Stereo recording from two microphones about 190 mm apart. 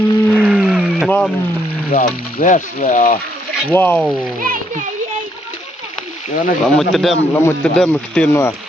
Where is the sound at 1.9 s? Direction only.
45° left (ahead or behind).